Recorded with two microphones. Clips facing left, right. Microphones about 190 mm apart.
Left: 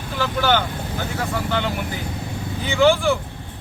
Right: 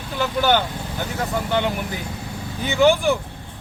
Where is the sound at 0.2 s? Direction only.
15° right (ahead or behind).